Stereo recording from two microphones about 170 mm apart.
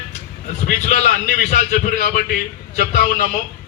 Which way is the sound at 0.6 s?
45° left (ahead or behind).